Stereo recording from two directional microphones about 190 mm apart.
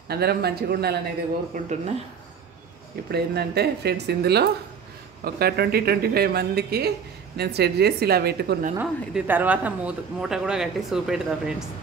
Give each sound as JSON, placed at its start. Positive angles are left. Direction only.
{"t": 0.1, "sound": "speech", "side_deg": -55}
{"t": 1.5, "sound": "speech", "side_deg": -35}
{"t": 3.1, "sound": "speech", "side_deg": -60}
{"t": 8.7, "sound": "speech", "side_deg": -10}